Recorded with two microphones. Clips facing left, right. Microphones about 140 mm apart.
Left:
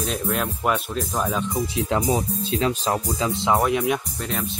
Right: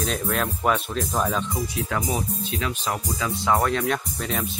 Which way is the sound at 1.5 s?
25° left (ahead or behind).